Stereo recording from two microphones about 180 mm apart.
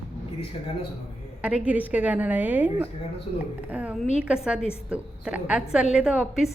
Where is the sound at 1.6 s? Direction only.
10° right (ahead or behind).